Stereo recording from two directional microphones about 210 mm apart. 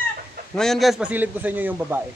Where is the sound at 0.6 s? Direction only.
Centre (ahead or behind).